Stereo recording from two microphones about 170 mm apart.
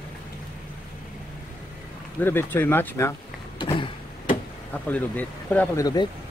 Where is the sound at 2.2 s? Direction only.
10° left (ahead or behind).